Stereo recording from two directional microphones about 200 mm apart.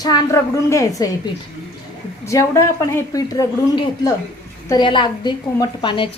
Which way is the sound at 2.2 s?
15° left (ahead or behind).